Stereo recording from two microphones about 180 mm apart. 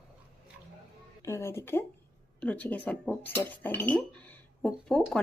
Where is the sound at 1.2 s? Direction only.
15° left (ahead or behind).